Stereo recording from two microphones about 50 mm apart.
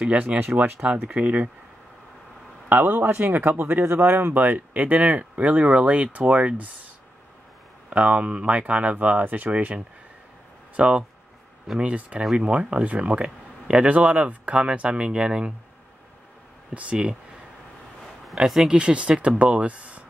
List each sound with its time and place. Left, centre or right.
0.3 s speech: right
2.7 s speech: right
7.9 s speech: right
16.7 s speech: right
18.2 s speech: centre
18.7 s speech: right